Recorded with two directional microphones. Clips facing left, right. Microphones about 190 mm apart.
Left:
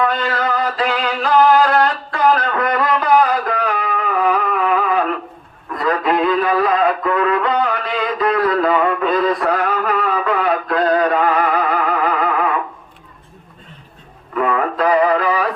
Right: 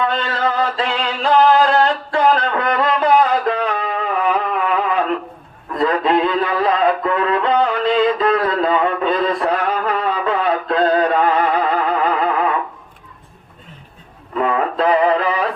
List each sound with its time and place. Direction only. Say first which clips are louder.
0.0 s music: left 1 dB; 25° right (ahead or behind)
14.3 s radio: even; 25° right (ahead or behind)